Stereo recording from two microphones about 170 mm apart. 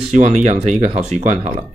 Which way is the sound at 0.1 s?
45° right (ahead or behind).